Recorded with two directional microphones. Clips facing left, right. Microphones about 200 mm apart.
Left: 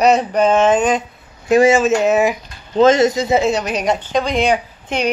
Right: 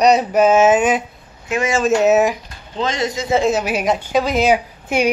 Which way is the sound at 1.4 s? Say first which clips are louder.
Left 9 dB; 35° left (ahead or behind).